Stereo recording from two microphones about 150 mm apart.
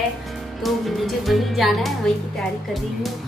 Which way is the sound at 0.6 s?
Centre (ahead or behind).